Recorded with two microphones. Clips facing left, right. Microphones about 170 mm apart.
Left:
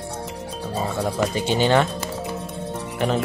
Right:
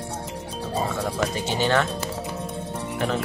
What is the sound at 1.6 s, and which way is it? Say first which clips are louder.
Speech: left 4 dB; 20° left (ahead or behind).